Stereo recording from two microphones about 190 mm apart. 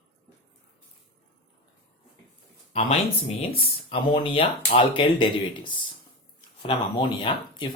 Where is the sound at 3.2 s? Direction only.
30° left (ahead or behind).